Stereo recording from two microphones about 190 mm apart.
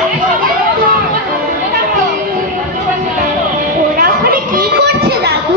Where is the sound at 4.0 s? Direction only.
50° right (ahead or behind).